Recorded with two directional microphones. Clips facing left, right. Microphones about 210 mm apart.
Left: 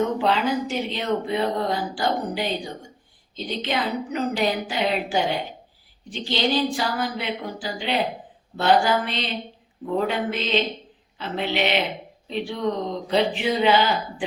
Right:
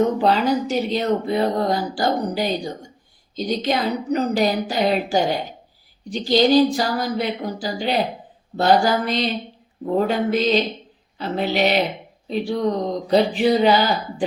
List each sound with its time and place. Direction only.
0.2 s speech: 40° right (ahead or behind)